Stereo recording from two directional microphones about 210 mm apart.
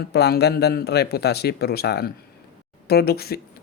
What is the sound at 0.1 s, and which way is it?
Speech, 50° left (ahead or behind).